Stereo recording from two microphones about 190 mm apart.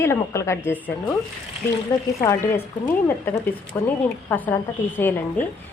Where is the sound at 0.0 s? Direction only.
15° left (ahead or behind).